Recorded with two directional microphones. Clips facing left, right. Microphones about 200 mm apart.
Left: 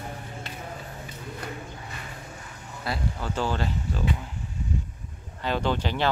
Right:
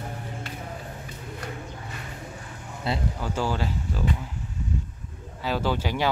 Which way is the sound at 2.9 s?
25° right (ahead or behind).